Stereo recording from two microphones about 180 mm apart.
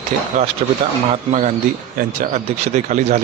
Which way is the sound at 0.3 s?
45° right (ahead or behind).